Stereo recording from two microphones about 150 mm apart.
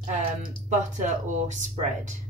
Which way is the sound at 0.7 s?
55° right (ahead or behind).